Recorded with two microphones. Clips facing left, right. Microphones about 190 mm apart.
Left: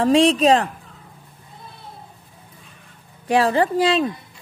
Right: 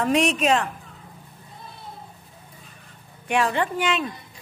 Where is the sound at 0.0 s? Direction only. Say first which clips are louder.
Left 6 dB; 30° left (ahead or behind).